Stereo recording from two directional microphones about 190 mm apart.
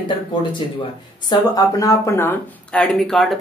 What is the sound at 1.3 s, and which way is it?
Speech, 20° left (ahead or behind).